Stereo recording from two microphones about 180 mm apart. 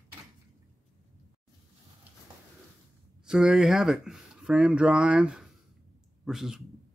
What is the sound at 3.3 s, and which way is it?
Speech, centre (ahead or behind).